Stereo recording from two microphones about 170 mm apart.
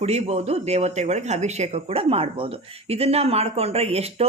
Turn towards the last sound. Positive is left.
turn(degrees=-40)  # may be behind; listen again after turning